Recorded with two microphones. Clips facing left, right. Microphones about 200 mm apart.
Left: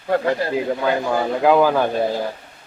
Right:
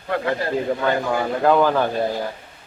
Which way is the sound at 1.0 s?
5° left (ahead or behind).